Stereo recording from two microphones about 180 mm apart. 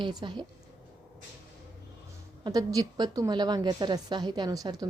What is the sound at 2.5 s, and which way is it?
A woman's voice, 20° right (ahead or behind).